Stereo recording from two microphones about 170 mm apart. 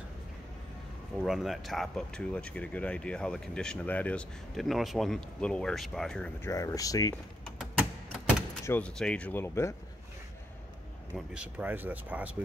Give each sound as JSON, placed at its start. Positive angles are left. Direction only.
{"t": 1.2, "sound": "speech", "side_deg": 0}
{"t": 6.5, "sound": "speech", "side_deg": 20}
{"t": 7.4, "sound": "a sound", "side_deg": 0}
{"t": 8.6, "sound": "speech", "side_deg": 10}
{"t": 11.1, "sound": "speech", "side_deg": -5}